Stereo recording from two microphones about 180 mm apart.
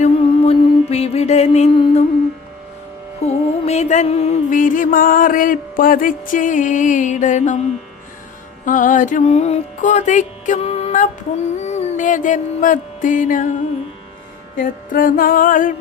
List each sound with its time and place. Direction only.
0.0 s mantra: 35° left (ahead or behind)
3.2 s music: 35° left (ahead or behind)
8.6 s music: 45° left (ahead or behind)
14.5 s music: 50° left (ahead or behind)